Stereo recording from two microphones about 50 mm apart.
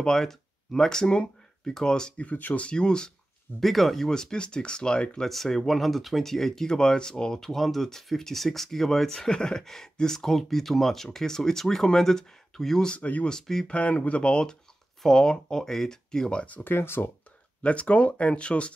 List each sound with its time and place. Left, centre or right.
0.0 s speech: centre
2.3 s speech: left
2.6 s speech: centre
3.6 s speech: centre
5.3 s speech: centre
12.9 s speech: left
13.3 s speech: centre
13.7 s speech: left
16.4 s speech: left
17.6 s speech: left